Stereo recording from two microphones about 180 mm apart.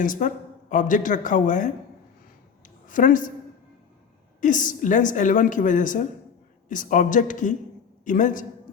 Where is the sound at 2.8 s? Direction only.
45° left (ahead or behind).